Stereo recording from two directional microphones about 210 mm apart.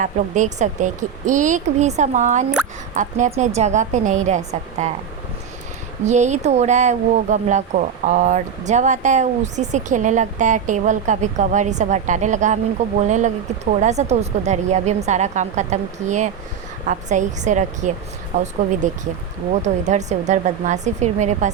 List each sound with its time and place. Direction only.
0.0 s speech: 35° right (ahead or behind)
6.1 s speech: 35° right (ahead or behind)
19.6 s speech: 35° right (ahead or behind)